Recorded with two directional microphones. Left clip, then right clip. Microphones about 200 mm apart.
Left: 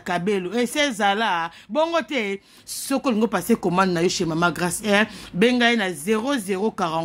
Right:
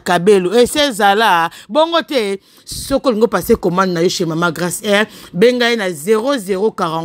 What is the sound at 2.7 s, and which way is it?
Speech, 15° right (ahead or behind).